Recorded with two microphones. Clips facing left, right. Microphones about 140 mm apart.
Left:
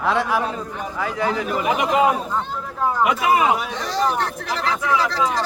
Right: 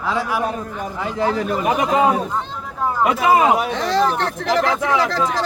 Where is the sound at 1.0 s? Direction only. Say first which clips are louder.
Right 2 dB; 25° right (ahead or behind).